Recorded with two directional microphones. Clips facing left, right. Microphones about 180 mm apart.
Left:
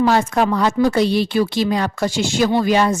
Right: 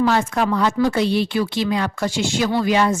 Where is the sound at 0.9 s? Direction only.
40° left (ahead or behind).